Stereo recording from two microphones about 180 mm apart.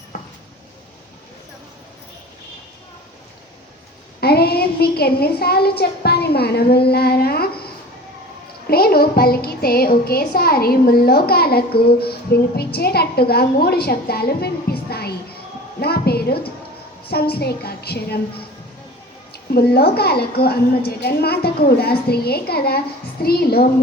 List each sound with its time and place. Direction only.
0.1 s a sound: 50° left (ahead or behind)
4.2 s a woman's voice: 60° left (ahead or behind)
8.6 s music: 55° left (ahead or behind)
15.8 s a sound: 60° left (ahead or behind)
17.1 s music: 60° left (ahead or behind)
19.5 s music: 60° left (ahead or behind)